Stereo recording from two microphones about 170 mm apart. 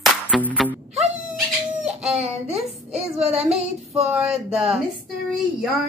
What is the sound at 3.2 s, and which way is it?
Child singing, 35° right (ahead or behind).